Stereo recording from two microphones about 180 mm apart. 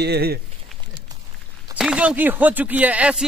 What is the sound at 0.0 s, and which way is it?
Speech, 60° right (ahead or behind).